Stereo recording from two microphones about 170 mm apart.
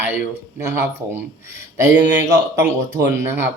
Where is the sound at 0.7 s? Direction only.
10° right (ahead or behind).